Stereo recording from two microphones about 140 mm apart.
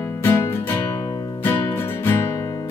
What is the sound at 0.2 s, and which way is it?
Music, 15° left (ahead or behind).